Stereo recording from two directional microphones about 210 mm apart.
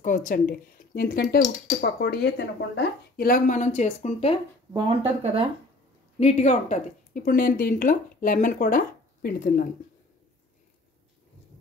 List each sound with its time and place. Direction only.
0.0 s a woman's voice: 40° left (ahead or behind)
4.7 s speech: 25° right (ahead or behind)
6.1 s a woman's voice: 35° left (ahead or behind)